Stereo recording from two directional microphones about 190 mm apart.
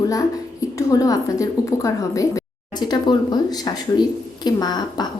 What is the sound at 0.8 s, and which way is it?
Speech, 20° left (ahead or behind).